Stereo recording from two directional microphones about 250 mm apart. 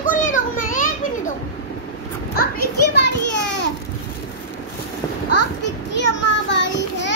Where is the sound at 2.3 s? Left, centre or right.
Left.